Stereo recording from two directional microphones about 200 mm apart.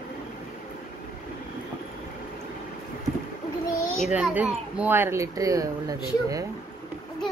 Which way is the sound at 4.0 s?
5° right (ahead or behind).